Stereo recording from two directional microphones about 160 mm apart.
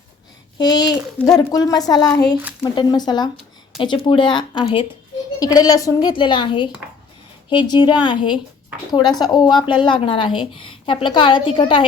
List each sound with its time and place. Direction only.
0.6 s a woman's voice: 25° left (ahead or behind)